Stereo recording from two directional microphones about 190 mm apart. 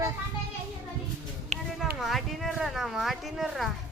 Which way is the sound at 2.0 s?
Centre (ahead or behind).